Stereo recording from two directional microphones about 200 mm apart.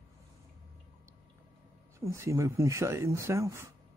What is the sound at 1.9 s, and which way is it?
Speech, 15° right (ahead or behind).